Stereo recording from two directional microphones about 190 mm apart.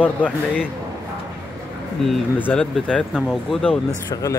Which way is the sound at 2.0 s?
5° left (ahead or behind).